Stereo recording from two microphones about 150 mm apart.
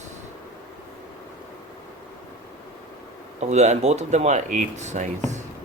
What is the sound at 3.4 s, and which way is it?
Speech, 50° right (ahead or behind).